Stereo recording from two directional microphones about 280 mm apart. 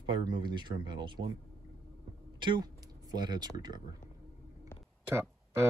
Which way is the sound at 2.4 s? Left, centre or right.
Centre.